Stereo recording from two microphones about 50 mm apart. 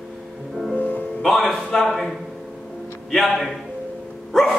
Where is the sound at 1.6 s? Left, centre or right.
Centre.